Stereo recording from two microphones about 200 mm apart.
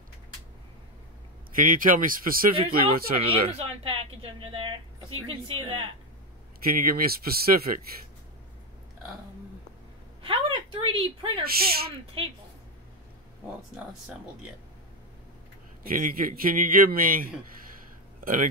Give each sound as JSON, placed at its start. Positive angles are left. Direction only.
{"t": 1.5, "sound": "a man's voice", "side_deg": -45}
{"t": 2.5, "sound": "speech", "side_deg": -25}
{"t": 6.6, "sound": "a man's voice", "side_deg": -45}
{"t": 10.2, "sound": "a sound", "side_deg": -25}
{"t": 11.4, "sound": "a man's voice", "side_deg": -50}
{"t": 12.2, "sound": "speech", "side_deg": -30}
{"t": 15.8, "sound": "a man's voice", "side_deg": -45}